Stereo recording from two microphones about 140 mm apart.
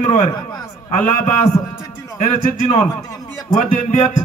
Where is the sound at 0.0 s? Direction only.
55° left (ahead or behind).